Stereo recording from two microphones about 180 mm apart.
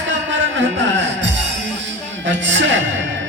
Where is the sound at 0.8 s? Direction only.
90° right.